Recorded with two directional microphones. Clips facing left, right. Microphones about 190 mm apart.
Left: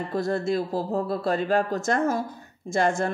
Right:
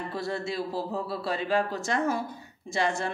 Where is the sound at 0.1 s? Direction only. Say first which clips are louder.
Left 9 dB; 45° left (ahead or behind).